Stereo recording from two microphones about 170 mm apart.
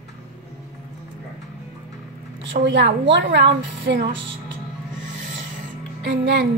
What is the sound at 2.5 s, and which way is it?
A woman's voice, 85° right.